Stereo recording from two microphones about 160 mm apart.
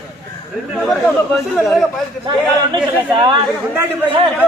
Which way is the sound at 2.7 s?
30° right (ahead or behind).